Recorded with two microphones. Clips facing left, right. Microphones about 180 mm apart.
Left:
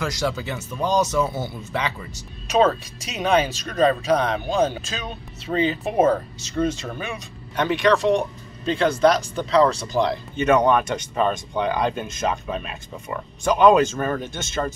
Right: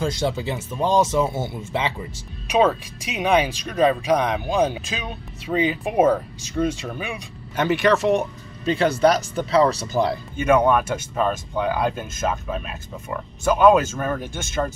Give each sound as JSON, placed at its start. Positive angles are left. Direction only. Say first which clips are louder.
{"t": 0.0, "sound": "speech", "louder": "right 2 dB", "side_deg": -25}
{"t": 2.4, "sound": "speech", "louder": "even", "side_deg": -15}